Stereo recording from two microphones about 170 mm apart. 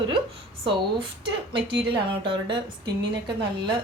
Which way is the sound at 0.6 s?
30° right (ahead or behind).